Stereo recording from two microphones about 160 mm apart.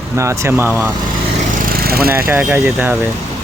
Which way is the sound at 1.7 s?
70° right (ahead or behind).